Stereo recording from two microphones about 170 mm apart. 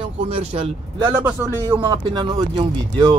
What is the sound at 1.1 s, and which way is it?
A man's voice, 15° right (ahead or behind).